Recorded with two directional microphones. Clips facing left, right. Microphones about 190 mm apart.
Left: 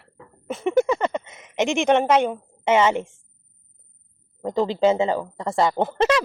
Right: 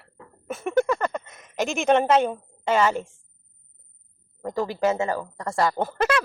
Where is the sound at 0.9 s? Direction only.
20° left (ahead or behind).